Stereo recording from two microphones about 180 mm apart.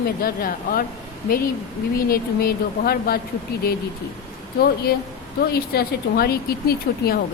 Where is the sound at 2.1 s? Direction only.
55° left (ahead or behind).